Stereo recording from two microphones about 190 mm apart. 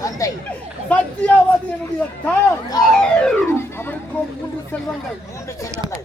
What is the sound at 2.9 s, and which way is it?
Theremin, 5° left (ahead or behind).